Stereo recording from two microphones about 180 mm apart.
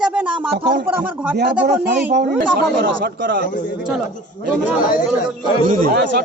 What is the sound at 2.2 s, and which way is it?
Speech, 55° right (ahead or behind).